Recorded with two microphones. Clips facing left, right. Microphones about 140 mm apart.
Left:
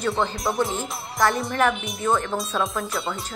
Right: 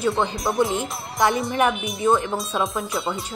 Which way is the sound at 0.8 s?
20° right (ahead or behind).